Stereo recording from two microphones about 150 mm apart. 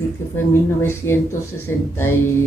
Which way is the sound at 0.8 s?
15° left (ahead or behind).